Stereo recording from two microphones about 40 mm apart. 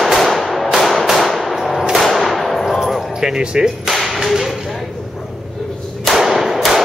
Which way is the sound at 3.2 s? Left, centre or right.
Centre.